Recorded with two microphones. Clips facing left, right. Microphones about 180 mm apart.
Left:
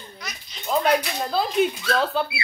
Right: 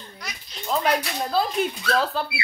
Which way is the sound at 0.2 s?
Centre (ahead or behind).